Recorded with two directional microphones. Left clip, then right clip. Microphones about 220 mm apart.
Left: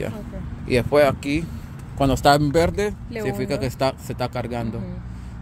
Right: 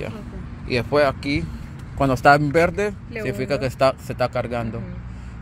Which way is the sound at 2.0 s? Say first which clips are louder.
Right 2 dB; 5° left (ahead or behind).